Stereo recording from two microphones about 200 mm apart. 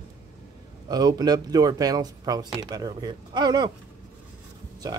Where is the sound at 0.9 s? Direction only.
20° right (ahead or behind).